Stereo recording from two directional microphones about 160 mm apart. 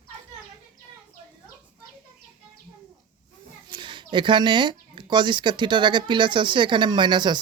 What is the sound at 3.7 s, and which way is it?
Speech, 30° right (ahead or behind).